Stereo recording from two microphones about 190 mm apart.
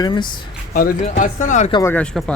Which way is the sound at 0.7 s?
50° left (ahead or behind).